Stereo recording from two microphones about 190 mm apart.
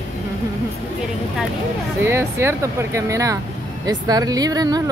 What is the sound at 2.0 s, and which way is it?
Speech, 15° right (ahead or behind).